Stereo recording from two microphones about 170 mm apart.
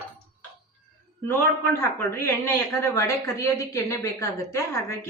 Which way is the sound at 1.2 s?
15° left (ahead or behind).